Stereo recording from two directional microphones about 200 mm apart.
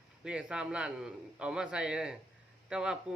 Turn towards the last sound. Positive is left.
turn(degrees=-5)  # may be behind; listen again after turning